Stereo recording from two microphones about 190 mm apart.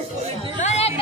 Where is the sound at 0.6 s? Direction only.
35° left (ahead or behind).